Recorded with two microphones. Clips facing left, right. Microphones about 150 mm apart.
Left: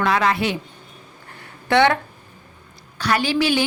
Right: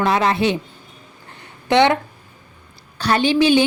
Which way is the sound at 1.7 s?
20° right (ahead or behind).